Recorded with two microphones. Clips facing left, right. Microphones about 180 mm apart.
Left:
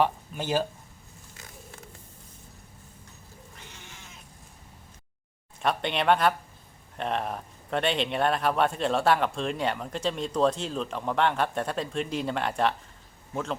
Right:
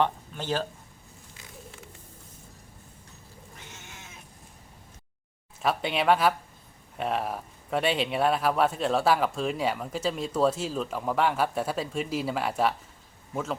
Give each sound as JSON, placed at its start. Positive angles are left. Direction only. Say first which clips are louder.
{"t": 0.0, "sound": "speech", "louder": "left 1 dB", "side_deg": 10}
{"t": 3.6, "sound": "goat", "louder": "right 3 dB", "side_deg": -50}
{"t": 5.6, "sound": "speech", "louder": "even", "side_deg": -5}